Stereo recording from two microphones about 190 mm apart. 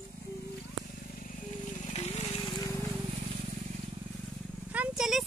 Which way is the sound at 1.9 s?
35° left (ahead or behind).